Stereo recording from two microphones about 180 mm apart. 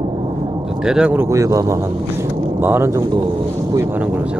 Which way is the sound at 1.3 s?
15° right (ahead or behind).